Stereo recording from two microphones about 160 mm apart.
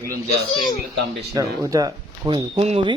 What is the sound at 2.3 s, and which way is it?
Speech, 40° right (ahead or behind).